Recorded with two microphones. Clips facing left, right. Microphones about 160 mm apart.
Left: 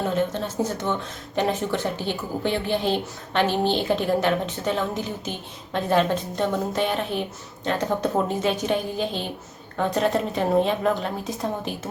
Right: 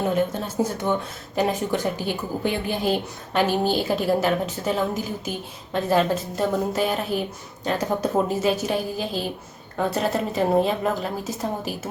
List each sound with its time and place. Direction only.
0.3 s a woman's voice: 10° right (ahead or behind)